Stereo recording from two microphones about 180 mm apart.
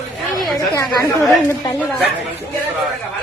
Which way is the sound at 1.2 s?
15° left (ahead or behind).